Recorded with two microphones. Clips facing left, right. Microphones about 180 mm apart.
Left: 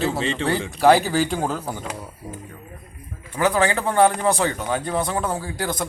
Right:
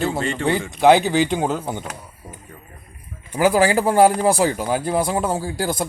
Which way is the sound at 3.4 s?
30° right (ahead or behind).